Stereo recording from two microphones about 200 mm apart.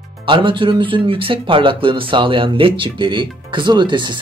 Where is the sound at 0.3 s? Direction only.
25° right (ahead or behind).